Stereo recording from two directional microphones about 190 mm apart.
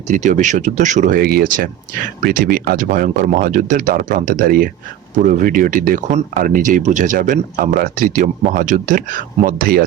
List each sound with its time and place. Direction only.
0.1 s speech: 40° right (ahead or behind)